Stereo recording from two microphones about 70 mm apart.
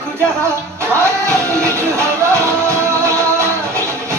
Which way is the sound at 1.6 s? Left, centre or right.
Right.